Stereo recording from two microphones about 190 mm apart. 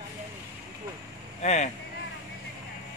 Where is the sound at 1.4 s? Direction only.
35° left (ahead or behind).